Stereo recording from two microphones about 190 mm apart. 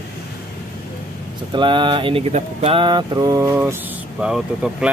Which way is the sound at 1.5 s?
25° right (ahead or behind).